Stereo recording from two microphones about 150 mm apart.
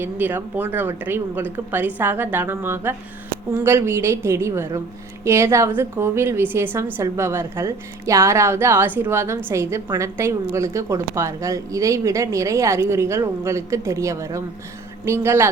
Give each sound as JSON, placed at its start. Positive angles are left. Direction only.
{"t": 0.0, "sound": "speech", "side_deg": -15}